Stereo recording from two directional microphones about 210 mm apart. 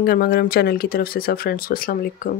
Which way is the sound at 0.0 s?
45° left (ahead or behind).